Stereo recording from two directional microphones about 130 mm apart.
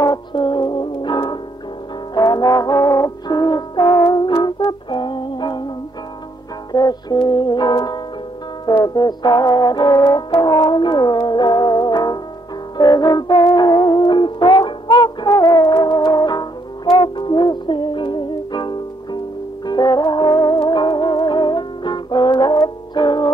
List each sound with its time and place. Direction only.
0.0 s music: 35° left (ahead or behind)
6.7 s music: 30° left (ahead or behind)
8.8 s brass instrument: 30° left (ahead or behind)
12.7 s music: 30° left (ahead or behind)